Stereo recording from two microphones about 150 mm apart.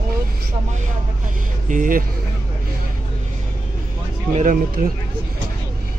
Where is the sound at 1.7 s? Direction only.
65° right (ahead or behind).